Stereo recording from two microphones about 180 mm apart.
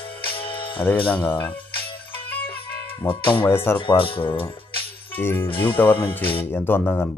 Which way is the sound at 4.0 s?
30° left (ahead or behind).